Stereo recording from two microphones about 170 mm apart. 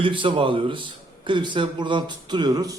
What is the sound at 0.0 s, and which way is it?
Speech, 30° right (ahead or behind).